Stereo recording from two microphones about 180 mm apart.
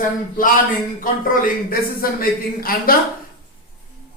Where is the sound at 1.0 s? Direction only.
50° left (ahead or behind).